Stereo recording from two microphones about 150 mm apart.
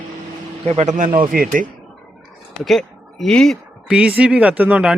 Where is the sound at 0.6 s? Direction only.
45° right (ahead or behind).